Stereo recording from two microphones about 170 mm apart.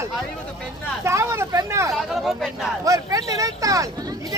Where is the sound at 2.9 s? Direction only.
20° right (ahead or behind).